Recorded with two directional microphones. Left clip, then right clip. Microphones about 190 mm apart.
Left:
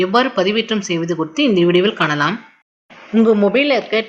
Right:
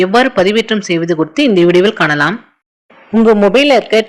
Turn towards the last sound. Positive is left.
turn(degrees=-30)  # may be behind; listen again after turning